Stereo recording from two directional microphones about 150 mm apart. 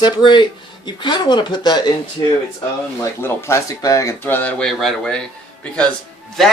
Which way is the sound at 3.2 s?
15° left (ahead or behind).